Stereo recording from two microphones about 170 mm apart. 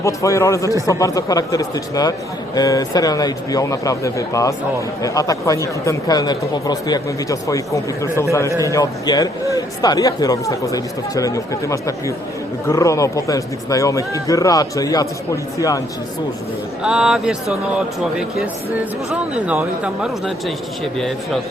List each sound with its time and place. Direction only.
0.0 s speech: 20° left (ahead or behind)
16.8 s a man's voice: 5° right (ahead or behind)
19.1 s speech: 5° right (ahead or behind)